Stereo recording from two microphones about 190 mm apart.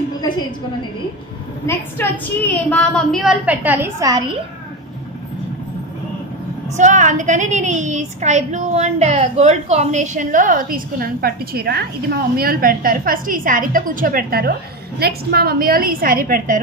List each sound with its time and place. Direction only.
1.7 s a woman's voice: 10° left (ahead or behind); by 4.4 s 20° right (ahead or behind)
6.8 s a woman's voice: 40° right (ahead or behind)